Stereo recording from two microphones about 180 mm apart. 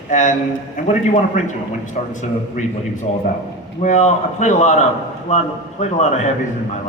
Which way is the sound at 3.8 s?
40° left (ahead or behind).